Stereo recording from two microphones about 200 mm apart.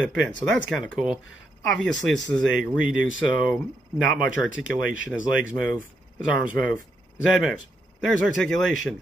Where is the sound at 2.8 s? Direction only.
75° left (ahead or behind).